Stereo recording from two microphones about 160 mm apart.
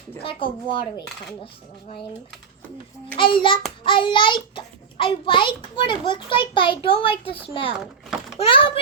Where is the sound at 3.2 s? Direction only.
30° left (ahead or behind).